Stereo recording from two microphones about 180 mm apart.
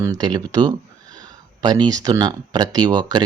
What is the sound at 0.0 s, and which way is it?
Speech, 20° right (ahead or behind).